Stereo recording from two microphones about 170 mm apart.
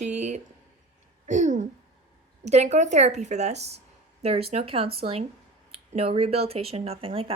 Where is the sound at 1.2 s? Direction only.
45° right (ahead or behind).